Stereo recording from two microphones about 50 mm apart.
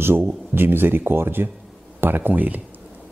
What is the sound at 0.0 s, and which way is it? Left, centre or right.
Speech, right.